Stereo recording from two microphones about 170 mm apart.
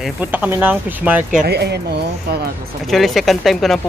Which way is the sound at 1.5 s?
75° right (ahead or behind).